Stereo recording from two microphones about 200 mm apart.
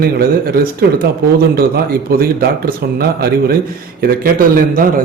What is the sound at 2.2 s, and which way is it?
A man's voice, 50° right (ahead or behind).